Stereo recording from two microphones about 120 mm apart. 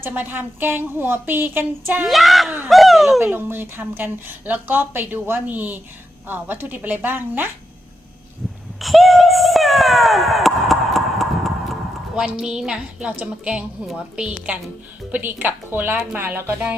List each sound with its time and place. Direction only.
0.0 s a woman's voice: 15° right (ahead or behind)
2.0 s speech: centre (ahead or behind)
3.2 s a woman's voice: 15° right (ahead or behind)
8.8 s a sound: centre (ahead or behind)
12.2 s a woman's voice: 5° right (ahead or behind)